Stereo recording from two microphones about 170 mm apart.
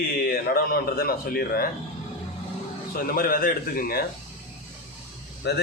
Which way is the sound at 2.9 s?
60° left (ahead or behind).